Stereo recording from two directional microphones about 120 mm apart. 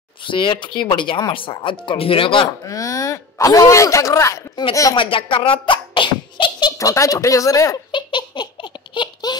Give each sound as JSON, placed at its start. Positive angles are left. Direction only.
{"t": 0.2, "sound": "speech", "side_deg": 45}
{"t": 2.6, "sound": "speech", "side_deg": 30}
{"t": 4.9, "sound": "beatboxing", "side_deg": 45}
{"t": 6.8, "sound": "speech", "side_deg": 25}
{"t": 7.9, "sound": "laughter", "side_deg": 40}
{"t": 8.9, "sound": "baby laughter", "side_deg": 40}